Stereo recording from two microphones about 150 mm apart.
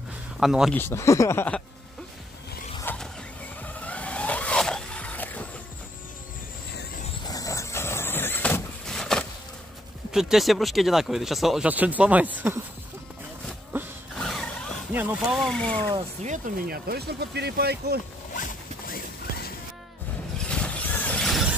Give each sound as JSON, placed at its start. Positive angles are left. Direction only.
{"t": 0.4, "sound": "speech", "side_deg": 0}
{"t": 0.7, "sound": "speech", "side_deg": 15}
{"t": 2.8, "sound": "vehicle", "side_deg": 10}
{"t": 7.2, "sound": "vehicle", "side_deg": 25}
{"t": 10.1, "sound": "speech", "side_deg": 0}
{"t": 14.1, "sound": "a sound", "side_deg": 0}
{"t": 14.9, "sound": "speech", "side_deg": -10}
{"t": 15.3, "sound": "speech", "side_deg": 5}
{"t": 16.3, "sound": "speech", "side_deg": -65}
{"t": 18.3, "sound": "zipper", "side_deg": 65}
{"t": 20.4, "sound": "vehicle", "side_deg": 10}